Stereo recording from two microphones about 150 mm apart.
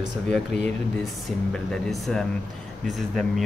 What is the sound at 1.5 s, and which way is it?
Speech, 5° left (ahead or behind).